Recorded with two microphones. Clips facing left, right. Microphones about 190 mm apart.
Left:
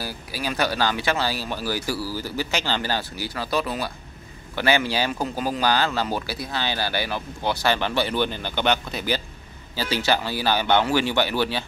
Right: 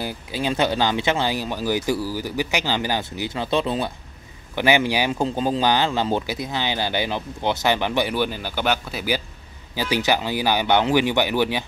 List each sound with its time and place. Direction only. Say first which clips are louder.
0.0 s speech: right 4 dB; 20° right (ahead or behind)